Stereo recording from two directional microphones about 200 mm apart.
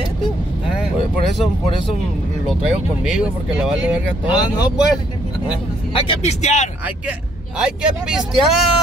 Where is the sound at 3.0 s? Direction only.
5° right (ahead or behind).